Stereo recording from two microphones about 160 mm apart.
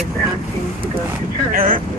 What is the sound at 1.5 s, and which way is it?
Speech, 60° right (ahead or behind).